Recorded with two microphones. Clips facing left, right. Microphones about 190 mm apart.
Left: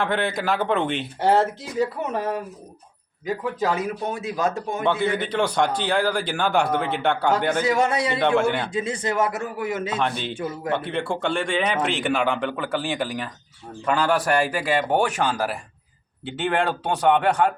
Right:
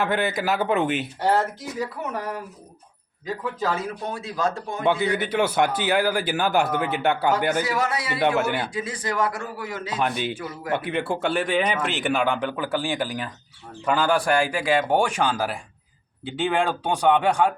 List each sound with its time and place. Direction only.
0.0 s speech: 5° right (ahead or behind)
1.3 s a man's voice: 25° left (ahead or behind)
5.1 s a man's voice: 5° right (ahead or behind)
7.6 s a man's voice: 25° left (ahead or behind)
8.4 s a man's voice: 5° right (ahead or behind)
8.7 s a man's voice: 25° left (ahead or behind)
9.9 s a man's voice: 5° right (ahead or behind)